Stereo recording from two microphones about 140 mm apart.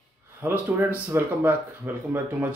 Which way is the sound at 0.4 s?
15° right (ahead or behind).